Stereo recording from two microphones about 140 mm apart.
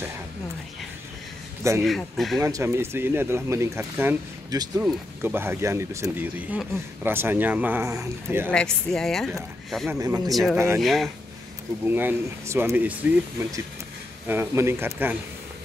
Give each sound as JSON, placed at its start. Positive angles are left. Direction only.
{"t": 1.8, "sound": "speech", "side_deg": 0}
{"t": 2.4, "sound": "speech", "side_deg": -20}
{"t": 4.5, "sound": "speech", "side_deg": -25}
{"t": 4.8, "sound": "speech", "side_deg": -15}
{"t": 7.8, "sound": "speech", "side_deg": -20}
{"t": 8.5, "sound": "speech", "side_deg": 5}
{"t": 9.8, "sound": "speech", "side_deg": -25}
{"t": 10.3, "sound": "speech", "side_deg": 0}
{"t": 11.8, "sound": "speech", "side_deg": -15}